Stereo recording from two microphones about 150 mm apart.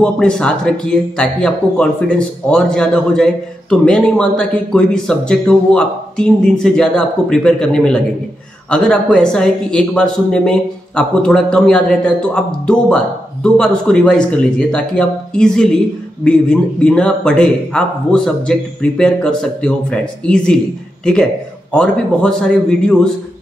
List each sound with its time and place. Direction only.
0.0 s speech: 5° left (ahead or behind)